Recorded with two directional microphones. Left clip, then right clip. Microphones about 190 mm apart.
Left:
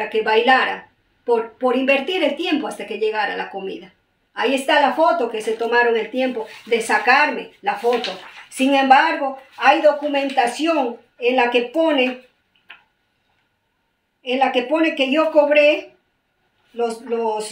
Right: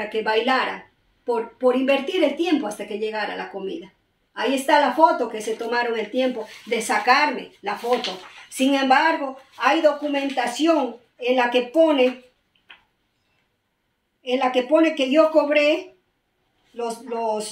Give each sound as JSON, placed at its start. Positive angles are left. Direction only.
{"t": 0.1, "sound": "a woman's voice", "side_deg": 10}
{"t": 14.2, "sound": "a woman's voice", "side_deg": 10}